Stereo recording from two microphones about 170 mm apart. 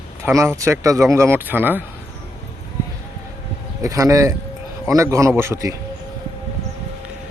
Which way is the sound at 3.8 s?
20° right (ahead or behind).